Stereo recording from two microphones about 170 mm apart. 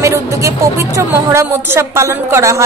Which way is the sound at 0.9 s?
15° right (ahead or behind).